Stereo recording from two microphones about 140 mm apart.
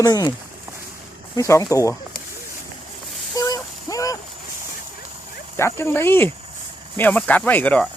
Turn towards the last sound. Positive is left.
turn(degrees=10)  # may be behind; listen again after turning